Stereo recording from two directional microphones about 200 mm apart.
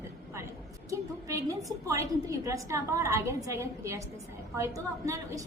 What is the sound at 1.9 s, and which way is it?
A woman's voice, 15° right (ahead or behind).